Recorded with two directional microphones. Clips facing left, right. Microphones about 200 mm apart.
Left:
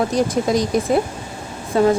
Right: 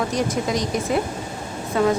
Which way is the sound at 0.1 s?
35° left (ahead or behind).